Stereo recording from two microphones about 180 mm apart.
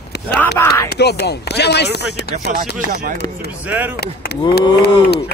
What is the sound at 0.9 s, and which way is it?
Speech, 65° left (ahead or behind).